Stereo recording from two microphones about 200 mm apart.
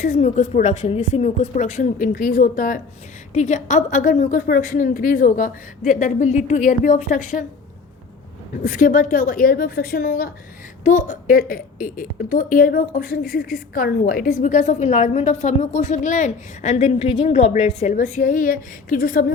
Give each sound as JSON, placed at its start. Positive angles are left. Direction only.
{"t": 0.0, "sound": "a woman's voice", "side_deg": 35}
{"t": 8.6, "sound": "a woman's voice", "side_deg": 40}